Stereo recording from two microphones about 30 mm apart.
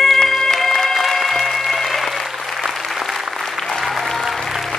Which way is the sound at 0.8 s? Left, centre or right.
Centre.